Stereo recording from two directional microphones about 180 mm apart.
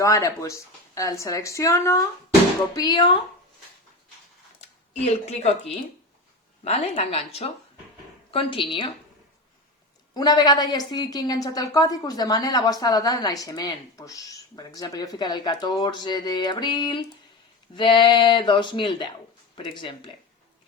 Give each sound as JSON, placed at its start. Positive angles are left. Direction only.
{"t": 0.0, "sound": "a woman's voice", "side_deg": 15}
{"t": 4.9, "sound": "a woman's voice", "side_deg": 35}
{"t": 10.2, "sound": "a woman's voice", "side_deg": 20}